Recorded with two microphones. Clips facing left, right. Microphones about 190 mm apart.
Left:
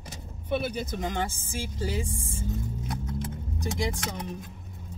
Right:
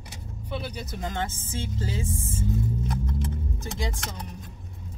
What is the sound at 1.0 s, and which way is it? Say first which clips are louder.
Speech: left 1 dB; 15° left (ahead or behind).